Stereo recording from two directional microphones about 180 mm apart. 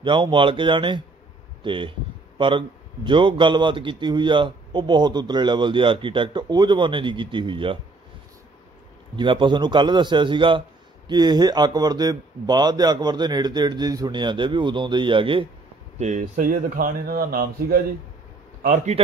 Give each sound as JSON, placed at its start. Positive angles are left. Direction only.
{"t": 0.0, "sound": "a man's voice", "side_deg": -25}
{"t": 9.1, "sound": "a man's voice", "side_deg": -25}
{"t": 16.0, "sound": "speech", "side_deg": -45}